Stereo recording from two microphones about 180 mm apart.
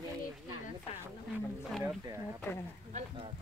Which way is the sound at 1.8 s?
15° right (ahead or behind).